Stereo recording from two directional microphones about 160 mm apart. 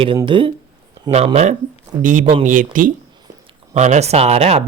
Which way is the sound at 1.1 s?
40° right (ahead or behind).